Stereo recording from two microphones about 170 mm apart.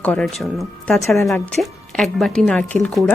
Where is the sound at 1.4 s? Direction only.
5° left (ahead or behind).